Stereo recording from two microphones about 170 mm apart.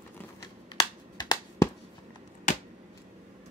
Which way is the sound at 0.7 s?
25° left (ahead or behind).